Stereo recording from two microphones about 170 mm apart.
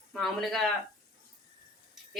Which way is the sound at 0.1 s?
Centre (ahead or behind).